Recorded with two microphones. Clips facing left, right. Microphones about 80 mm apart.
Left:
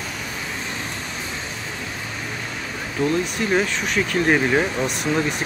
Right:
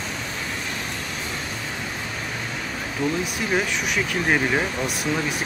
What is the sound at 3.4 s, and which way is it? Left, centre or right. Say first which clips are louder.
Speech: left 1 dB; centre.